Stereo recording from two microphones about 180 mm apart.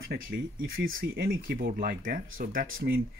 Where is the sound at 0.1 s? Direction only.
55° right (ahead or behind).